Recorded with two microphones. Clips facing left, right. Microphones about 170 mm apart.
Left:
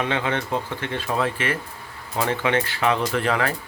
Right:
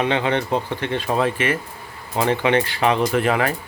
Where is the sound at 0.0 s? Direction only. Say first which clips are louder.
Right 4 dB; 25° right (ahead or behind).